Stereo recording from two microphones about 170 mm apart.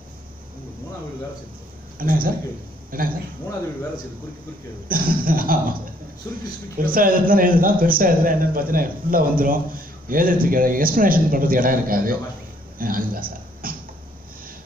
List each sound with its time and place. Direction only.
2.0 s a man's voice: 55° right (ahead or behind)
4.8 s speech: 55° right (ahead or behind)
6.8 s speech: 55° right (ahead or behind)